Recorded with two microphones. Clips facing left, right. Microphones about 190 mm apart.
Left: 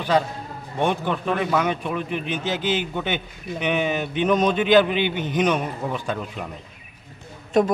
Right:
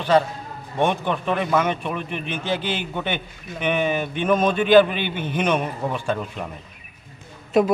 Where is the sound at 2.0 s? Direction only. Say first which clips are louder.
Left 2 dB; 55° right (ahead or behind).